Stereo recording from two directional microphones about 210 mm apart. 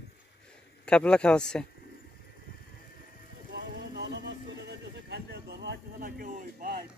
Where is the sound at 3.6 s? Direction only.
55° right (ahead or behind).